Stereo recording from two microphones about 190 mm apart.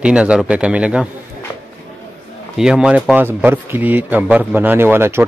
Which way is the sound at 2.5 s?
5° right (ahead or behind).